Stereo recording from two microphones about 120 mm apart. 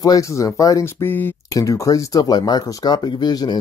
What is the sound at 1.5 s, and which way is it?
Speech, 30° left (ahead or behind).